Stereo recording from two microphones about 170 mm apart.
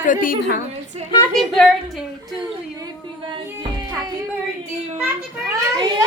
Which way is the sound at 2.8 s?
30° right (ahead or behind).